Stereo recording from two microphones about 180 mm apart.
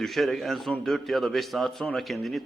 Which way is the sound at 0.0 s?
Centre (ahead or behind).